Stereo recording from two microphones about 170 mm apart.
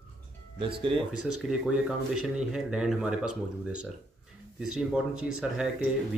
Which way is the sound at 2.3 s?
5° right (ahead or behind).